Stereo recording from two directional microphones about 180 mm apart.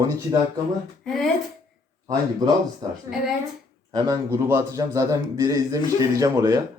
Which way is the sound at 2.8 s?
25° right (ahead or behind).